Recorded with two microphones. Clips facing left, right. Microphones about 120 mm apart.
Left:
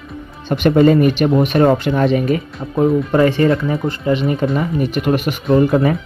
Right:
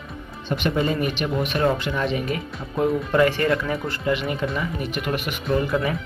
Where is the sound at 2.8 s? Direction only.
30° left (ahead or behind).